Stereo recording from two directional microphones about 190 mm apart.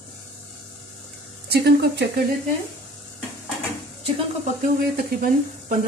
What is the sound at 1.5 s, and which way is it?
Speech, 60° right (ahead or behind).